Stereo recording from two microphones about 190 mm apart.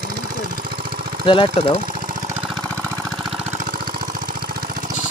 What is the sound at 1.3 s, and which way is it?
Speech, 25° left (ahead or behind).